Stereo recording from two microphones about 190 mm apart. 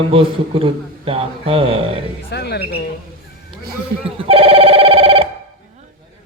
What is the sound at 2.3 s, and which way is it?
Speech, 60° left (ahead or behind).